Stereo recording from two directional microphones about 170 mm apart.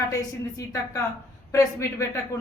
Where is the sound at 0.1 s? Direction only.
20° left (ahead or behind).